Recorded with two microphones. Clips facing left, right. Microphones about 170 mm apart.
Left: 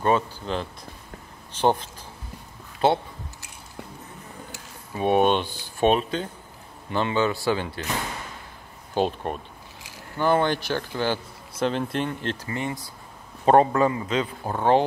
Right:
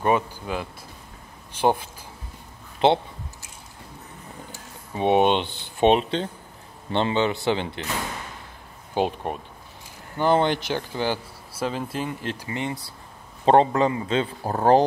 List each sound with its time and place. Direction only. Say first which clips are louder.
0.0 s speech: even; 10° right (ahead or behind)
4.9 s speech: right 1 dB; 20° right (ahead or behind)
8.9 s speech: even; 15° right (ahead or behind)
12.4 s speech: even; 20° right (ahead or behind); by 14.9 s 40° right (ahead or behind)